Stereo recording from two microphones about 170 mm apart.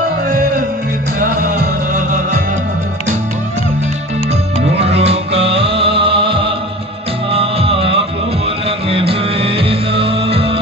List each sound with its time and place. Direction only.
1.2 s music: 50° right (ahead or behind)
4.6 s music: 35° right (ahead or behind)